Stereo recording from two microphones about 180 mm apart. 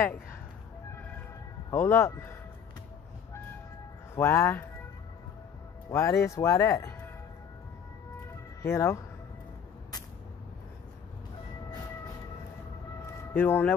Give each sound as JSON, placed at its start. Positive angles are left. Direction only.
{"t": 0.0, "sound": "speech", "side_deg": 10}
{"t": 1.7, "sound": "speech", "side_deg": 10}
{"t": 4.1, "sound": "speech", "side_deg": 15}
{"t": 5.9, "sound": "speech", "side_deg": 15}
{"t": 8.6, "sound": "speech", "side_deg": 15}
{"t": 13.0, "sound": "a sound", "side_deg": 10}